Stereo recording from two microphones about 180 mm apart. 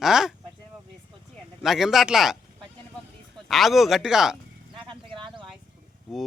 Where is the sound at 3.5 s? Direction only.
Centre (ahead or behind).